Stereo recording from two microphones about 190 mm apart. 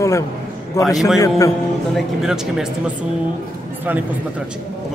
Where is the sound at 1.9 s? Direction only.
5° right (ahead or behind).